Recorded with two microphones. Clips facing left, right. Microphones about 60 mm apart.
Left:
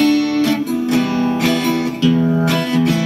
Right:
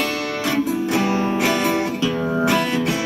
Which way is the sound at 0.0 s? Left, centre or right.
Centre.